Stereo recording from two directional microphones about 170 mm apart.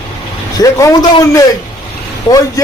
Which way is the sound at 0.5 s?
20° left (ahead or behind).